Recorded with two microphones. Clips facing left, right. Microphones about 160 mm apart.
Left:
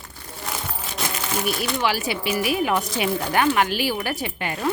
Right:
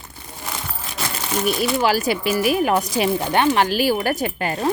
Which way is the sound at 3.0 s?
25° right (ahead or behind).